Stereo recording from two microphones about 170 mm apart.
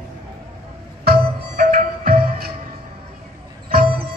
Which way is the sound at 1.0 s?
60° right (ahead or behind).